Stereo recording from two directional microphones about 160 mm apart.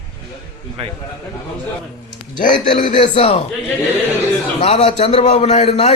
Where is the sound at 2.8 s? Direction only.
35° left (ahead or behind).